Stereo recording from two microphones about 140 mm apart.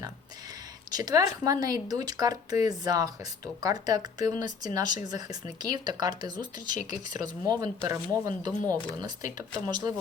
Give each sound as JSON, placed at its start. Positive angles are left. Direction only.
{"t": 0.9, "sound": "speech", "side_deg": -30}
{"t": 6.7, "sound": "speech", "side_deg": 60}
{"t": 7.4, "sound": "speech", "side_deg": -25}
{"t": 8.6, "sound": "speech", "side_deg": 10}
{"t": 9.6, "sound": "speech", "side_deg": -30}